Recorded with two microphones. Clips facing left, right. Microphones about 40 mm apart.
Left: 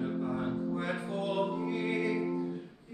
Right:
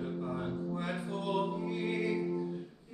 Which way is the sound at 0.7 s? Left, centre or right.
Centre.